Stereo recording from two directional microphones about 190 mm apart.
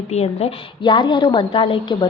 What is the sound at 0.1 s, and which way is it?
A woman's voice, 35° left (ahead or behind).